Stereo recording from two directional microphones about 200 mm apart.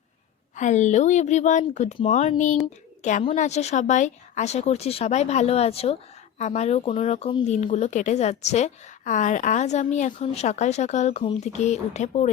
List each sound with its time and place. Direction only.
0.5 s speech: 35° left (ahead or behind)